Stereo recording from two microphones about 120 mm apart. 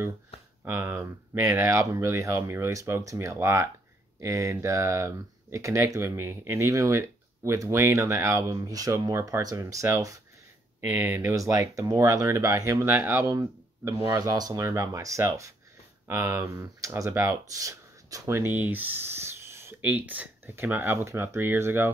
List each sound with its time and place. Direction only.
0.7 s speech: 20° right (ahead or behind)